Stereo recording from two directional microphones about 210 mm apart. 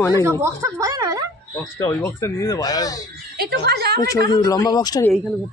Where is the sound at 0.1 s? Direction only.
15° right (ahead or behind).